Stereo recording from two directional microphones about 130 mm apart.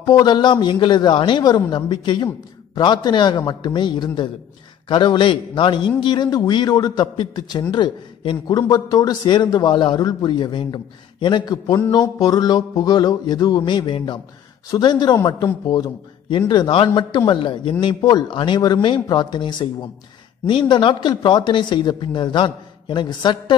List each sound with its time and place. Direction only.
0.0 s a man's voice: 30° left (ahead or behind)